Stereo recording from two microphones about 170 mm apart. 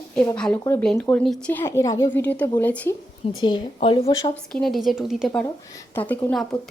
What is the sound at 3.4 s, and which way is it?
Speech, 30° left (ahead or behind).